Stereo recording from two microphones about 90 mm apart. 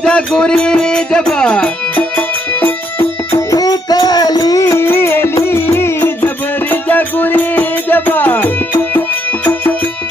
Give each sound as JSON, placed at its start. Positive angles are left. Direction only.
{"t": 0.0, "sound": "music", "side_deg": 10}
{"t": 3.4, "sound": "music", "side_deg": 45}